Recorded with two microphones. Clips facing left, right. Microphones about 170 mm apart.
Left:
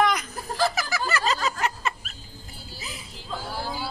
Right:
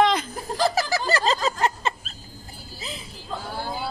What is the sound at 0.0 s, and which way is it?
Snicker, 25° right (ahead or behind).